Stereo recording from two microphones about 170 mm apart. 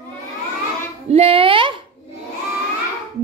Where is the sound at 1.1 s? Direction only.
35° right (ahead or behind).